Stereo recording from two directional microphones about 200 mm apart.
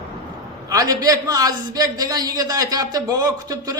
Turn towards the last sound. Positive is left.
turn(degrees=-20)  # may be behind; listen again after turning